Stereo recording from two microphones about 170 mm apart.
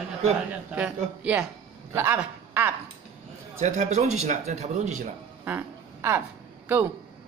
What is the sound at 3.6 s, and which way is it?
Speech, 45° right (ahead or behind).